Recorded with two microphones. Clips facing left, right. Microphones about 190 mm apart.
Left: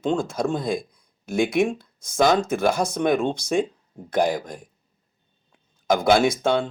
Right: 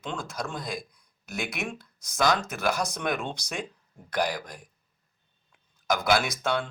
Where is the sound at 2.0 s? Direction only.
50° left (ahead or behind).